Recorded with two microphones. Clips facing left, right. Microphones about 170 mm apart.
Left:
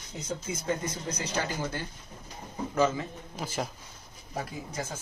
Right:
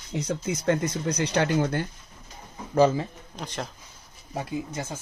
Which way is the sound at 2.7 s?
35° right (ahead or behind).